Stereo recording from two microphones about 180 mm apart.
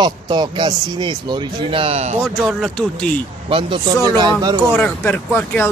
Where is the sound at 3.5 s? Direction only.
25° right (ahead or behind).